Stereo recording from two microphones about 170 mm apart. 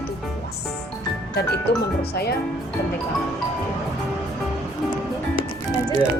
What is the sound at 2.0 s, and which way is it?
Speech, 65° left (ahead or behind).